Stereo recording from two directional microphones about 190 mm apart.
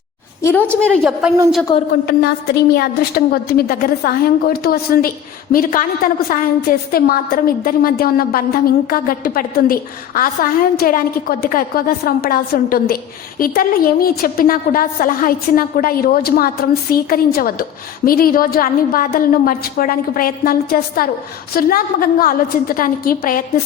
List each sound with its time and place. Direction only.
0.8 s a woman's voice: 5° left (ahead or behind)
1.9 s a woman's voice: 55° left (ahead or behind)